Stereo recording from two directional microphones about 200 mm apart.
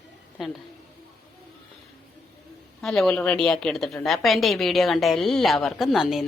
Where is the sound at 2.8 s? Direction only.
Centre (ahead or behind).